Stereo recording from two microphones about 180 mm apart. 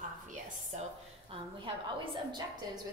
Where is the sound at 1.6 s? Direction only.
30° right (ahead or behind).